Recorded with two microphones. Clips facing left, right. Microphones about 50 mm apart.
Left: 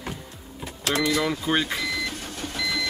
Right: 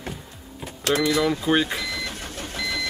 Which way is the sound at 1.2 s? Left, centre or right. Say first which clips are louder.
Right 3 dB; centre.